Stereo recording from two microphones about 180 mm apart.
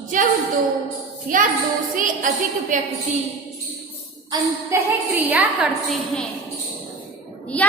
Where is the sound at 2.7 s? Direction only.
45° right (ahead or behind).